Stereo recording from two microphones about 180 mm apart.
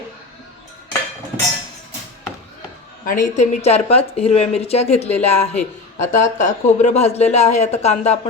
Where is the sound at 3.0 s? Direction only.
45° left (ahead or behind).